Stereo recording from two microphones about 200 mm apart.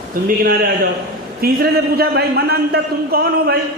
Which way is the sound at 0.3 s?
45° right (ahead or behind).